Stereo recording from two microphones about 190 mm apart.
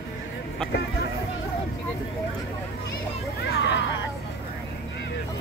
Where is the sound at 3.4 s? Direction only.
65° left (ahead or behind).